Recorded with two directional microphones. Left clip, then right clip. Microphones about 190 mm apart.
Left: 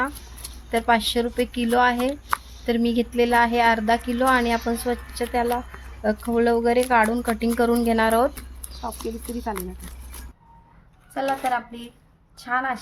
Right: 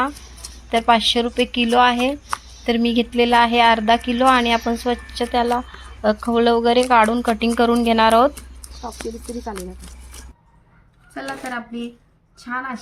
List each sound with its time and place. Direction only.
0.7 s speech: centre (ahead or behind)
11.1 s speech: 25° left (ahead or behind)